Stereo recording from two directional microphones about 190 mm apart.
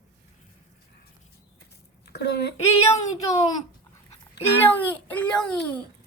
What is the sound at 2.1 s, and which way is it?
Speech, 60° left (ahead or behind).